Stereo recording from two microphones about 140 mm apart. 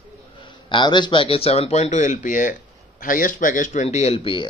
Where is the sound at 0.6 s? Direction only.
35° left (ahead or behind); by 2.5 s 60° left (ahead or behind).